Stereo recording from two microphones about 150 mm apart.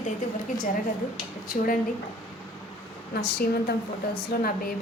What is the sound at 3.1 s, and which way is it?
Speech, 90° left.